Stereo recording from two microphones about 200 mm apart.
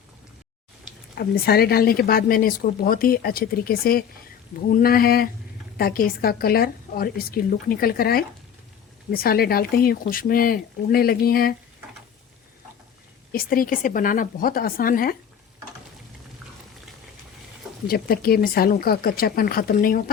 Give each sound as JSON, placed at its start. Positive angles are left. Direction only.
{"t": 1.1, "sound": "speech", "side_deg": 50}
{"t": 13.3, "sound": "speech", "side_deg": 45}
{"t": 17.8, "sound": "speech", "side_deg": 50}